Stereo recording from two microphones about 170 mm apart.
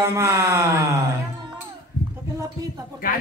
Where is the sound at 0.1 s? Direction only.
15° right (ahead or behind).